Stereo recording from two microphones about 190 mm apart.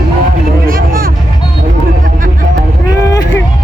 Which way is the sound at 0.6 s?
50° right (ahead or behind).